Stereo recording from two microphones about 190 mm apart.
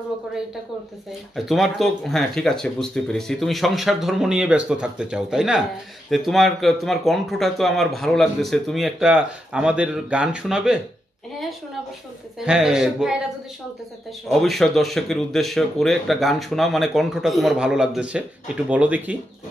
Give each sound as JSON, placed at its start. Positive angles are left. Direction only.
{"t": 1.3, "sound": "speech", "side_deg": 0}
{"t": 12.4, "sound": "speech", "side_deg": -5}
{"t": 14.3, "sound": "speech", "side_deg": 0}